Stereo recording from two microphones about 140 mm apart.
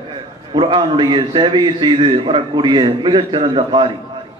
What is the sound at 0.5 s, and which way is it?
A man's voice, 35° right (ahead or behind).